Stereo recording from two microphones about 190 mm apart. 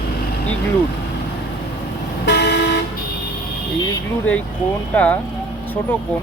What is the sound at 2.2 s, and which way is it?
Vehicle, 60° left (ahead or behind).